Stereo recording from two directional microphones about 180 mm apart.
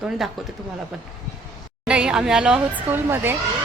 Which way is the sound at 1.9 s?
5° right (ahead or behind).